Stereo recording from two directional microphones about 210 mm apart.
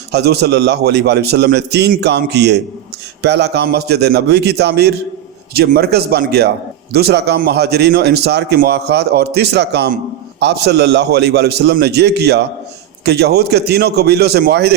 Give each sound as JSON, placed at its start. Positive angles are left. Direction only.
{"t": 0.1, "sound": "a man's voice", "side_deg": -50}